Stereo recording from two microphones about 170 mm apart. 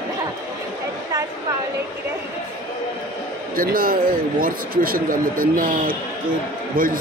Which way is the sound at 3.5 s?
55° right (ahead or behind).